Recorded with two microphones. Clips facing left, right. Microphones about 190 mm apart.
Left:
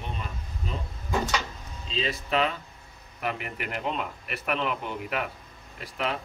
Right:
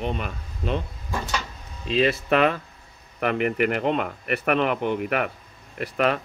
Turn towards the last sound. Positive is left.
turn(degrees=-65)  # may be behind; listen again after turning